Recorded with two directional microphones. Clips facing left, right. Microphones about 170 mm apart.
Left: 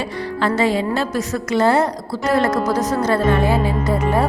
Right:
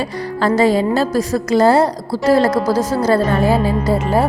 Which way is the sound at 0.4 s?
40° right (ahead or behind).